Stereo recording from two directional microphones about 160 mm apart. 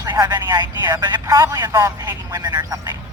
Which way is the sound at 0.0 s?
25° right (ahead or behind).